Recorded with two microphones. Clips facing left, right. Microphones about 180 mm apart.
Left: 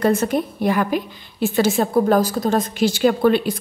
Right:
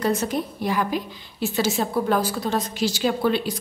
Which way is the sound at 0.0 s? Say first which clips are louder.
Left 5 dB; 55° left (ahead or behind).